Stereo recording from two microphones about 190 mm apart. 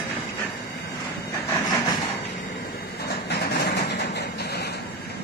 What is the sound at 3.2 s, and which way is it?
Vehicle, 60° left (ahead or behind).